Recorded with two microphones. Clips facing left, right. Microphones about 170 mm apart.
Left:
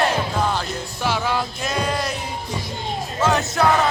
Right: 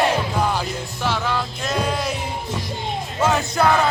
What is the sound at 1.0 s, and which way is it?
Music, 5° left (ahead or behind).